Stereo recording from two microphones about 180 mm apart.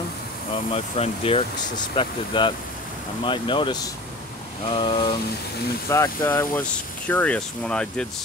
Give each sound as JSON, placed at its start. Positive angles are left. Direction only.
{"t": 0.7, "sound": "speech", "side_deg": 35}
{"t": 5.9, "sound": "speech", "side_deg": 15}